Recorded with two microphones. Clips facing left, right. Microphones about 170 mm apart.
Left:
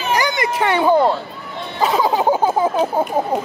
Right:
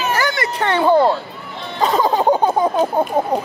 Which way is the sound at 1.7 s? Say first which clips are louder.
Right 1 dB; centre (ahead or behind).